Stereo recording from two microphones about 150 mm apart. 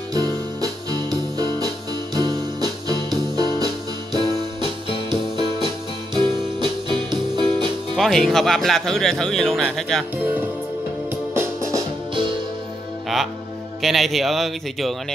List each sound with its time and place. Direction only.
0.1 s music: 25° right (ahead or behind)
2.9 s music: 25° right (ahead or behind)
7.9 s speech: centre (ahead or behind)
10.1 s music: 10° right (ahead or behind)
12.1 s music: 35° right (ahead or behind)
13.7 s speech: centre (ahead or behind)